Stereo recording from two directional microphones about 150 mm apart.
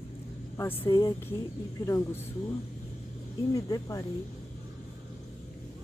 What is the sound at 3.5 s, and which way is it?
Speech, 25° left (ahead or behind).